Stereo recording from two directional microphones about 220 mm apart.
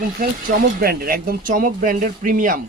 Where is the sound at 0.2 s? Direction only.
40° right (ahead or behind).